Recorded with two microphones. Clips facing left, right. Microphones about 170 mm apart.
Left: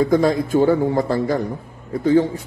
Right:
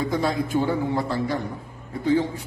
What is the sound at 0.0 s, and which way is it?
A man's voice, 45° left (ahead or behind).